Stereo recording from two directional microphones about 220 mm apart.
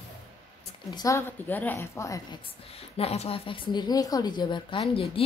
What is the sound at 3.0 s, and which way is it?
Speech, 30° left (ahead or behind).